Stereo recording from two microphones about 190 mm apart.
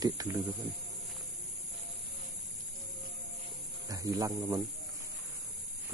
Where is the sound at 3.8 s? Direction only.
20° right (ahead or behind).